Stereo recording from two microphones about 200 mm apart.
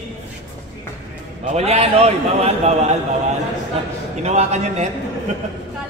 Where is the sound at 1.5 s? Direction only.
30° right (ahead or behind).